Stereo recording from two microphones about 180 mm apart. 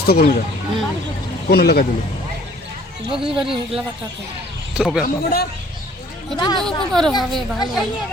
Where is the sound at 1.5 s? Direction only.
60° left (ahead or behind).